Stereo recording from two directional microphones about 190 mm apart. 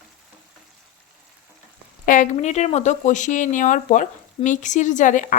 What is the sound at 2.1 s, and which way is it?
Speech, 40° left (ahead or behind).